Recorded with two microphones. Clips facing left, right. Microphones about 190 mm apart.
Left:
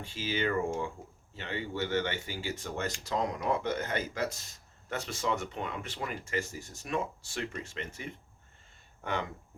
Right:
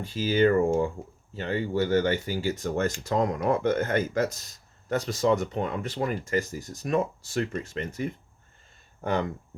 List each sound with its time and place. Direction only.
0.0 s speech: 40° right (ahead or behind)